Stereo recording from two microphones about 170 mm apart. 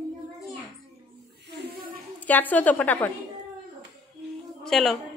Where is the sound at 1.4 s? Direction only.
75° right (ahead or behind).